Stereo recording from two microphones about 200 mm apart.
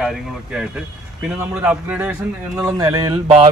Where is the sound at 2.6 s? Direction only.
20° right (ahead or behind).